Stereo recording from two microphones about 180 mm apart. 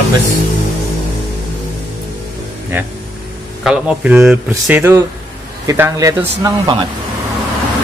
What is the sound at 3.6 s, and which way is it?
Speech, 5° right (ahead or behind).